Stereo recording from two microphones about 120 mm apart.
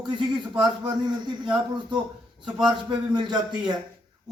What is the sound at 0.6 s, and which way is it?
Speech, 35° right (ahead or behind).